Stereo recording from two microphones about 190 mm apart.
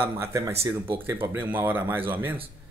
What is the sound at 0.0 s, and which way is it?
Speech, 10° right (ahead or behind).